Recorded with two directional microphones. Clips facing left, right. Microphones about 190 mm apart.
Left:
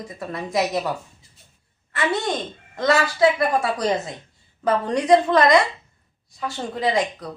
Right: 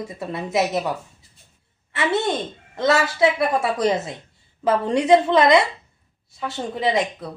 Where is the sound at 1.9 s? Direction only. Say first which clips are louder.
Right 2 dB; 25° right (ahead or behind).